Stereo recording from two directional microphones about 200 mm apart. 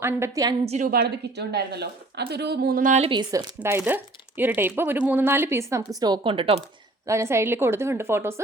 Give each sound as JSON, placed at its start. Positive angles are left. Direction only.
{"t": 0.0, "sound": "speech", "side_deg": -15}
{"t": 0.6, "sound": "a woman's voice", "side_deg": -35}
{"t": 0.9, "sound": "a woman's voice", "side_deg": -50}
{"t": 3.1, "sound": "speech", "side_deg": -20}
{"t": 3.6, "sound": "speech", "side_deg": -10}
{"t": 7.0, "sound": "speech", "side_deg": -15}